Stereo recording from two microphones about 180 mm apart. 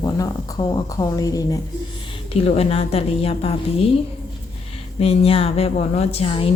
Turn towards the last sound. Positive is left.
turn(degrees=30)  # may be behind; listen again after turning